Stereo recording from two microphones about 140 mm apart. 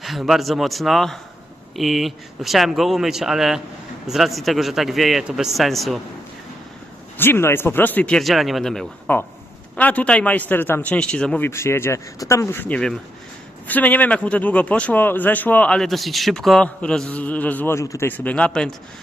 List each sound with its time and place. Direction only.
0.0 s speech: centre (ahead or behind)
7.2 s speech: 15° left (ahead or behind)